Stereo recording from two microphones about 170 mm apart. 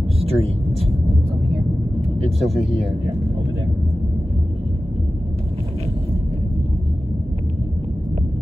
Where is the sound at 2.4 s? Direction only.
35° right (ahead or behind).